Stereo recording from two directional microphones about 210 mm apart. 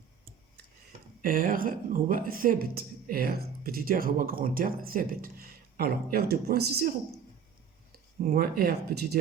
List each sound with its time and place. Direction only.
1.2 s speech: 40° right (ahead or behind)
8.2 s speech: 45° right (ahead or behind)